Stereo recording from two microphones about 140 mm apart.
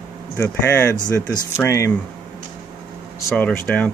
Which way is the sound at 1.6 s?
20° left (ahead or behind).